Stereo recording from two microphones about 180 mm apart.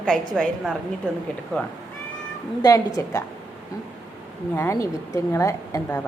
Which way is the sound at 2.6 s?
20° left (ahead or behind).